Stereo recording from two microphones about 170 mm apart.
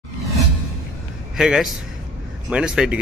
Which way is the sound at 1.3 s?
Centre (ahead or behind).